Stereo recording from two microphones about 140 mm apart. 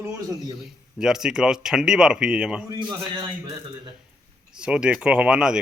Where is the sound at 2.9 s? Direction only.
30° right (ahead or behind).